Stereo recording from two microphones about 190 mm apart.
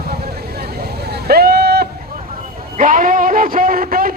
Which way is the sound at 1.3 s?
55° right (ahead or behind).